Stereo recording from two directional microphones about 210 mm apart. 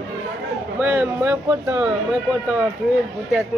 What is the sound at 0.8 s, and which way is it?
Speech, 10° right (ahead or behind).